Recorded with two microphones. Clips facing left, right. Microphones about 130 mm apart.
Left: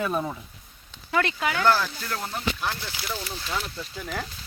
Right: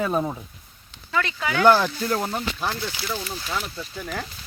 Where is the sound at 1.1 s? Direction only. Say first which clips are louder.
Left 1 dB; 50° left (ahead or behind).